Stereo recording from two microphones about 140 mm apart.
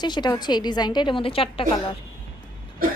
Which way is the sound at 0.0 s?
30° left (ahead or behind).